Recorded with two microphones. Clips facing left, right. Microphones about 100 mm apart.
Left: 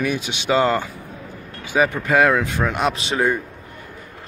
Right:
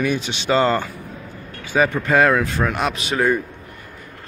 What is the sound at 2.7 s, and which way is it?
Speech, 25° left (ahead or behind).